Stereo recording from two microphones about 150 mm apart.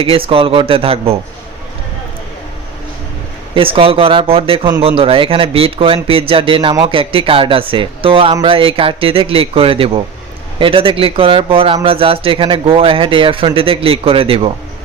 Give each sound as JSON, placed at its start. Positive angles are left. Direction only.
{"t": 0.0, "sound": "a man's voice", "side_deg": -35}
{"t": 3.5, "sound": "a man's voice", "side_deg": -35}